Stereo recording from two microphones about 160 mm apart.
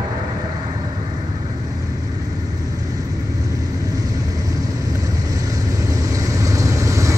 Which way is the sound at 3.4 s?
20° right (ahead or behind).